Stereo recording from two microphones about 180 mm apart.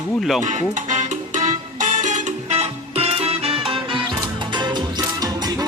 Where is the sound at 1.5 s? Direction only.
45° right (ahead or behind).